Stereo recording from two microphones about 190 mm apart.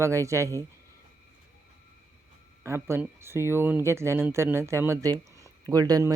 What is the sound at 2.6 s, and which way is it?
Speech, 15° right (ahead or behind).